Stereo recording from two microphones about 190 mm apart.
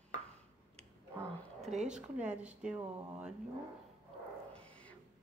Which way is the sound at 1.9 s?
5° right (ahead or behind).